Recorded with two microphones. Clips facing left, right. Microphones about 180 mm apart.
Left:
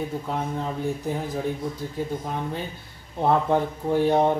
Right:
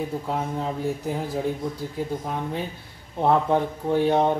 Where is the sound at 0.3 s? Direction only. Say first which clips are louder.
Right 1 dB; 5° right (ahead or behind).